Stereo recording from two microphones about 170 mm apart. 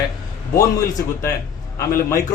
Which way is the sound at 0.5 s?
20° left (ahead or behind).